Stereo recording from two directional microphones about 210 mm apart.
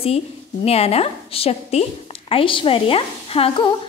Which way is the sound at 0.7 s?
30° left (ahead or behind).